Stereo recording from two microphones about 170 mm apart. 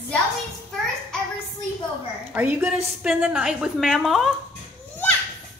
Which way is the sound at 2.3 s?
10° right (ahead or behind).